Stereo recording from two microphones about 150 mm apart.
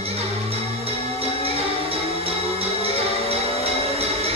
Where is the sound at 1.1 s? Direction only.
40° right (ahead or behind).